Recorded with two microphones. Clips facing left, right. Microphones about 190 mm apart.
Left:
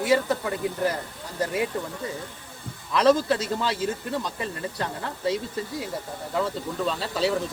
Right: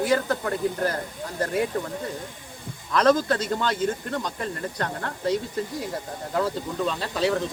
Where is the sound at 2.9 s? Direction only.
5° left (ahead or behind).